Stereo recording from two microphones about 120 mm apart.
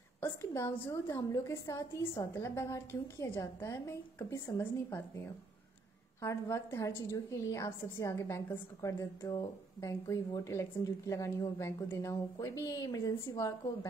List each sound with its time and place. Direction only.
0.2 s a woman's voice: 25° left (ahead or behind)